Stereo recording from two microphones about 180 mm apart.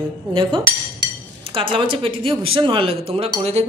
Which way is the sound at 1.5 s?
30° right (ahead or behind).